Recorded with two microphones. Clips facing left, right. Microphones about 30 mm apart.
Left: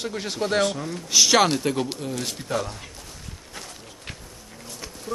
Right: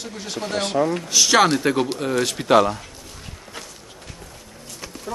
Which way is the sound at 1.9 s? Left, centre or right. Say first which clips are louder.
Right 8 dB; right.